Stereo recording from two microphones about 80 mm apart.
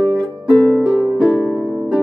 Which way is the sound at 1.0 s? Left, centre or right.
Centre.